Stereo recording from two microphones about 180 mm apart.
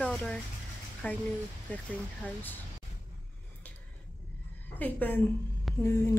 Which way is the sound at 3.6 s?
10° left (ahead or behind).